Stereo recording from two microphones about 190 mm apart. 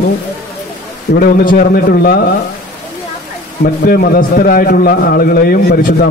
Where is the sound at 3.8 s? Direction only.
50° left (ahead or behind).